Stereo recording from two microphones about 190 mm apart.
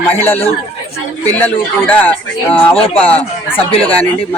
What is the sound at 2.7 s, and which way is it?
Speech, 30° left (ahead or behind).